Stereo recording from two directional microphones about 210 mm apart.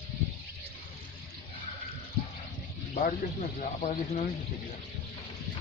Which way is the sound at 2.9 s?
40° left (ahead or behind).